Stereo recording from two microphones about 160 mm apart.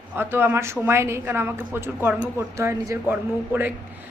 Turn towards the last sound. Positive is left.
turn(degrees=-10)  # may be behind; listen again after turning